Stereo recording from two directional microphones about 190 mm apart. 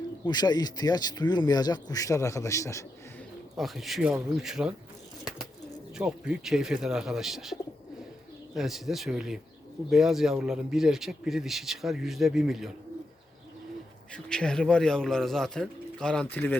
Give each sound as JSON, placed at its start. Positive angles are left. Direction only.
{"t": 0.3, "sound": "speech", "side_deg": 20}
{"t": 3.6, "sound": "a man's voice", "side_deg": 0}
{"t": 6.0, "sound": "a man's voice", "side_deg": -5}
{"t": 8.5, "sound": "a man's voice", "side_deg": 0}
{"t": 14.1, "sound": "a man's voice", "side_deg": 5}